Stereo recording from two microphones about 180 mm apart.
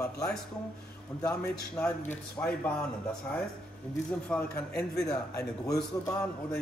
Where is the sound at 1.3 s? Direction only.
5° left (ahead or behind).